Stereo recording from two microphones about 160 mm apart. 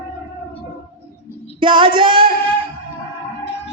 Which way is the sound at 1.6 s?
30° right (ahead or behind).